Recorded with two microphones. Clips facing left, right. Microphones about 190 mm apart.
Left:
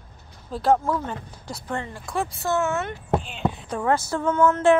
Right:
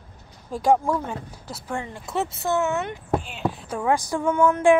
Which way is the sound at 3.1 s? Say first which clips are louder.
Left 1 dB; 5° right (ahead or behind).